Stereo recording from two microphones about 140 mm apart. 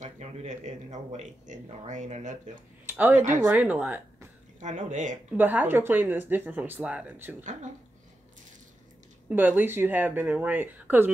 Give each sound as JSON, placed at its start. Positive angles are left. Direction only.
{"t": 0.0, "sound": "speech", "side_deg": -55}
{"t": 2.9, "sound": "speech", "side_deg": -15}
{"t": 4.6, "sound": "speech", "side_deg": -60}
{"t": 5.3, "sound": "speech", "side_deg": -10}
{"t": 9.3, "sound": "speech", "side_deg": -15}